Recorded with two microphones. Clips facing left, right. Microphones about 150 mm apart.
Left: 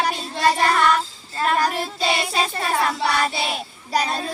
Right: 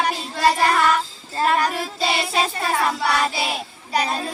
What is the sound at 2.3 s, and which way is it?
Child singing, centre (ahead or behind).